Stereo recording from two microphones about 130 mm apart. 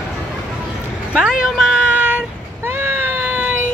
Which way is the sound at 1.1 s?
5° right (ahead or behind).